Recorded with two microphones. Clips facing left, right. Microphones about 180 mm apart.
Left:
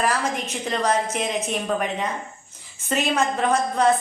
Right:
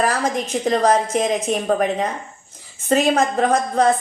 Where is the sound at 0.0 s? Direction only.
40° right (ahead or behind).